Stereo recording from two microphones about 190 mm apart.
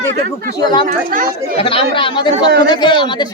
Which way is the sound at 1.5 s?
30° left (ahead or behind).